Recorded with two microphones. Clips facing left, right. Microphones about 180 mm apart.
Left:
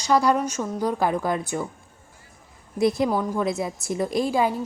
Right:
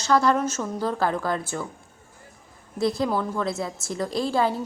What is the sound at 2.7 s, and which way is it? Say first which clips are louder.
A woman's voice: left 2 dB; 20° left (ahead or behind).